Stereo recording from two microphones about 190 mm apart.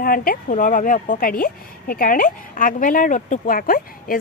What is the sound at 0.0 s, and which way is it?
A woman's voice, 50° left (ahead or behind).